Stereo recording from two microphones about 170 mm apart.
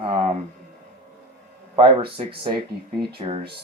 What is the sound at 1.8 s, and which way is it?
Speech, 30° right (ahead or behind).